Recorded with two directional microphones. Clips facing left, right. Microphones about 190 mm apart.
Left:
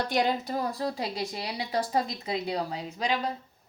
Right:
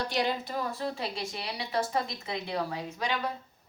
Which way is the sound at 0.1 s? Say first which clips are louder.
Left 3 dB; 45° left (ahead or behind).